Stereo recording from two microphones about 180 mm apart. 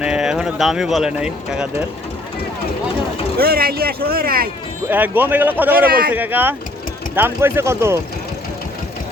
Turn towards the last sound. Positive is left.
turn(degrees=-15)  # may be behind; listen again after turning